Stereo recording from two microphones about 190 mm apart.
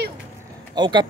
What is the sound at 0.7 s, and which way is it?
Speech, 25° right (ahead or behind).